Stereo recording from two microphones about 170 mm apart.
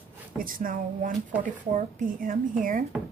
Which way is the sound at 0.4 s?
55° right (ahead or behind).